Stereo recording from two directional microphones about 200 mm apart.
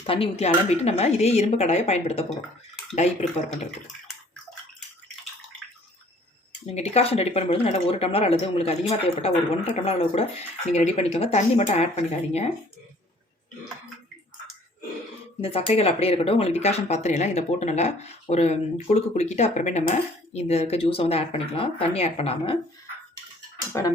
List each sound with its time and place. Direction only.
0.0 s speech: 25° left (ahead or behind)
6.7 s speech: 30° left (ahead or behind)
15.4 s speech: 30° left (ahead or behind)